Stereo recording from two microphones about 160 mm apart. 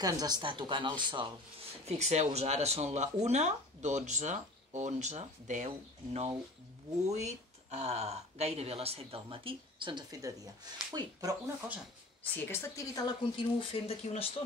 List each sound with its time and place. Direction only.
0.0 s a woman's voice: 25° right (ahead or behind)
1.9 s a woman's voice: 45° right (ahead or behind); by 11.3 s 25° right (ahead or behind)
12.2 s a woman's voice: 15° left (ahead or behind); by 14.3 s 40° left (ahead or behind)